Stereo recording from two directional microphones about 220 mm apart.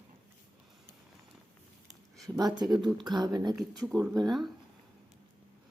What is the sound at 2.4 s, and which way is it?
Speech, 20° right (ahead or behind).